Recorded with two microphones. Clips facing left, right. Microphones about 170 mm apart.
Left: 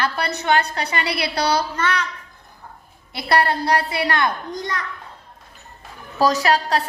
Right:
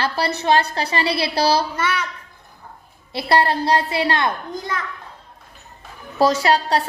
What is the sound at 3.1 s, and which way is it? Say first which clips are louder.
A woman's voice: right 1 dB; 25° right (ahead or behind).